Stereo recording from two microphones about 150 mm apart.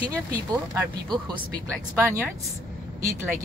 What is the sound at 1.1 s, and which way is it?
Speech, 30° right (ahead or behind).